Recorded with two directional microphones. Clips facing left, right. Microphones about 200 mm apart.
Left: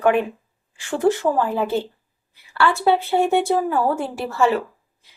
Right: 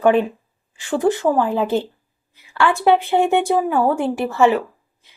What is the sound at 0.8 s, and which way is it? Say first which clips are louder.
A woman's voice: right 1 dB; 15° right (ahead or behind).